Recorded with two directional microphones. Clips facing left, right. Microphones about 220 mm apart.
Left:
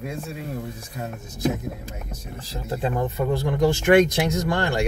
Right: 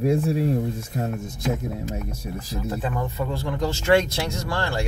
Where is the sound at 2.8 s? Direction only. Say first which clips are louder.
Left 8 dB; 25° left (ahead or behind).